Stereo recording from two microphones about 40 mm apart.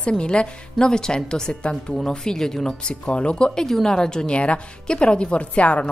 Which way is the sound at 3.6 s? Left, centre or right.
Centre.